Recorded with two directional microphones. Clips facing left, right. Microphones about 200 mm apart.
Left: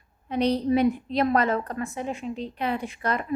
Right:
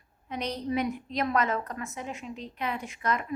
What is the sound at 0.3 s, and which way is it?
A woman's voice, 30° left (ahead or behind).